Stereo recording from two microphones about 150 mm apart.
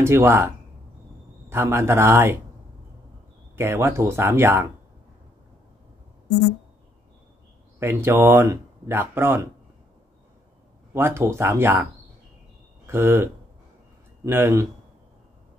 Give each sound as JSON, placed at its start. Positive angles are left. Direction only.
{"t": 0.0, "sound": "speech", "side_deg": -15}
{"t": 1.5, "sound": "speech", "side_deg": -15}
{"t": 3.5, "sound": "speech", "side_deg": -15}
{"t": 7.8, "sound": "speech", "side_deg": -15}
{"t": 10.9, "sound": "speech", "side_deg": -15}